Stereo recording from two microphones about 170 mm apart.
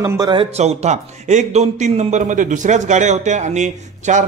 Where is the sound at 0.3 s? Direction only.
35° right (ahead or behind).